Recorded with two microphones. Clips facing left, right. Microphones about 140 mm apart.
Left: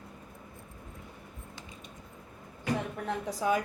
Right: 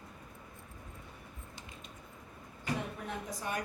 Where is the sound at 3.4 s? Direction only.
90° left.